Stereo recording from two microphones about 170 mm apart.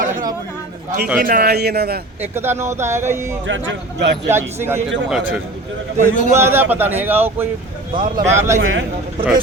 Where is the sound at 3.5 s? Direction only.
90° right.